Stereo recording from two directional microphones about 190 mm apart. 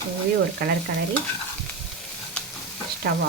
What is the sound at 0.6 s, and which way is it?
Speech, 55° right (ahead or behind).